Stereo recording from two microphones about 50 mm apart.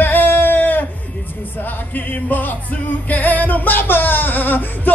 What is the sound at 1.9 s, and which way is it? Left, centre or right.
Music, left.